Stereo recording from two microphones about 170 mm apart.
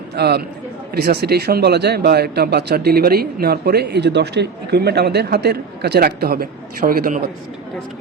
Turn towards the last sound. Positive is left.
turn(degrees=-55)  # may be behind; listen again after turning